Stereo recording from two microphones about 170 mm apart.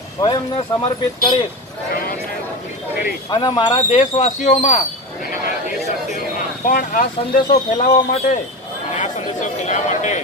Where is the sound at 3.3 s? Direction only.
25° left (ahead or behind).